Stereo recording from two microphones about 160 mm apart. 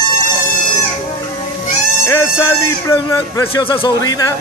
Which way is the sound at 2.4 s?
20° left (ahead or behind).